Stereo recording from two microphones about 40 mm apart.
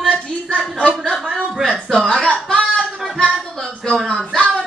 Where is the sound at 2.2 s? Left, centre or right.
Left.